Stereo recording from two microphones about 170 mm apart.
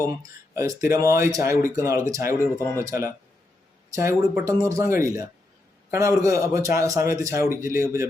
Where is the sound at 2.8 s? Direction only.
15° right (ahead or behind).